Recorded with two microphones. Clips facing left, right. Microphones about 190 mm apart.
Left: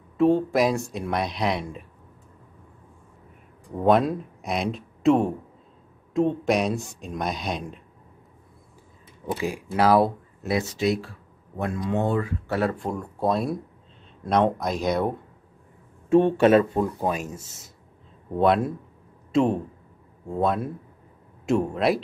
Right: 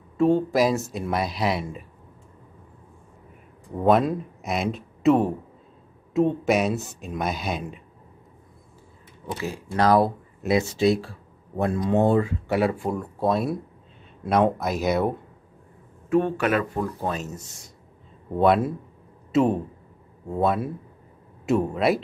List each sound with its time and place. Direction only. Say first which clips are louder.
0.2 s speech: even; centre (ahead or behind)
3.7 s speech: even; centre (ahead or behind)
9.4 s speech: even; 15° left (ahead or behind)
10.4 s speech: right 4 dB; 25° right (ahead or behind)
12.4 s speech: right 2 dB; 10° right (ahead or behind)
16.1 s speech: left 5 dB; 25° left (ahead or behind); by 17.4 s 10° left (ahead or behind)
18.3 s speech: right 1 dB; centre (ahead or behind)